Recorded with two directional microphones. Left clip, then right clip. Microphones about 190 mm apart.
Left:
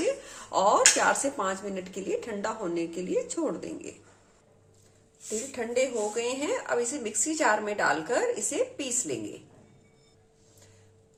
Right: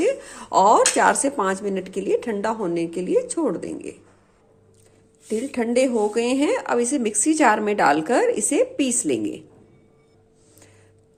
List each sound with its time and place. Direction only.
0.0 s speech: 35° right (ahead or behind)
5.5 s speech: 55° right (ahead or behind)